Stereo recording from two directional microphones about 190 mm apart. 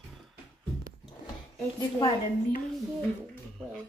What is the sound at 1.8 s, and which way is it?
Speech, 25° left (ahead or behind).